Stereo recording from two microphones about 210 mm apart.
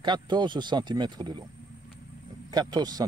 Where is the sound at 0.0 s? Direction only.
20° right (ahead or behind).